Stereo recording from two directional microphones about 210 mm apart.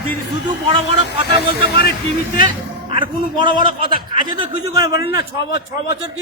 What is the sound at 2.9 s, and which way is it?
Speech, 20° right (ahead or behind).